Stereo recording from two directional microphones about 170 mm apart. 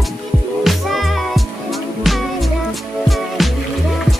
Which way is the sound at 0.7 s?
Centre (ahead or behind).